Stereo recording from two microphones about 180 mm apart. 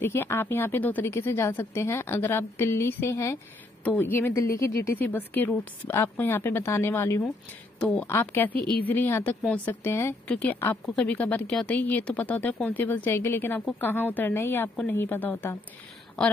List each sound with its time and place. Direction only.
0.0 s speech: 15° left (ahead or behind)
8.5 s speech: 25° right (ahead or behind)
8.8 s speech: 10° left (ahead or behind)